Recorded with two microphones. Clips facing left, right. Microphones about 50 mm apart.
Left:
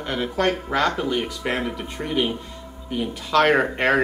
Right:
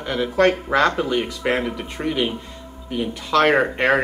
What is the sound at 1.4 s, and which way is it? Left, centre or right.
Speech, centre.